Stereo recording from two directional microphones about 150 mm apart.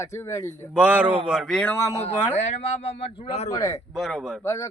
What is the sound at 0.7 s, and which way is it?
A man's voice, 10° right (ahead or behind).